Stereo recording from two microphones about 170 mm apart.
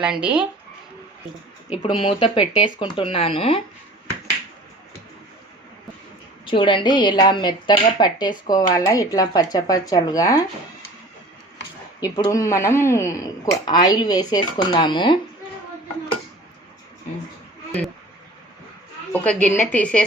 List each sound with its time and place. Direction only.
0.0 s speech: 5° right (ahead or behind)
1.8 s speech: 30° left (ahead or behind)
6.4 s speech: 30° left (ahead or behind)
11.9 s speech: 25° left (ahead or behind)
19.1 s a woman's voice: 10° left (ahead or behind)